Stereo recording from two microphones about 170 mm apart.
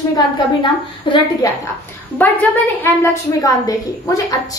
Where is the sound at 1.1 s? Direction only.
30° left (ahead or behind).